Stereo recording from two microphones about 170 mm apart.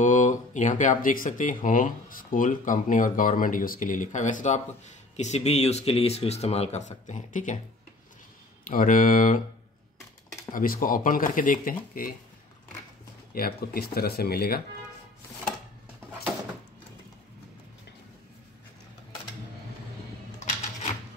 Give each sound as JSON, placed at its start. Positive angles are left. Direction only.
{"t": 0.0, "sound": "speech", "side_deg": 50}
{"t": 8.6, "sound": "speech", "side_deg": 50}
{"t": 10.5, "sound": "speech", "side_deg": 55}
{"t": 13.3, "sound": "speech", "side_deg": 65}